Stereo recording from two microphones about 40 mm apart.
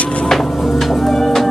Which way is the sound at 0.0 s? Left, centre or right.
Left.